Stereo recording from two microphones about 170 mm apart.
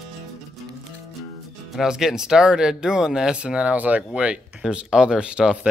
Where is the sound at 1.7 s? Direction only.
5° right (ahead or behind).